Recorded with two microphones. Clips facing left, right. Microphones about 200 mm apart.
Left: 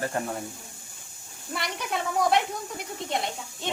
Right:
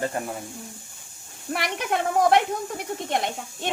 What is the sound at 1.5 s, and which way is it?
Speech, 60° right (ahead or behind).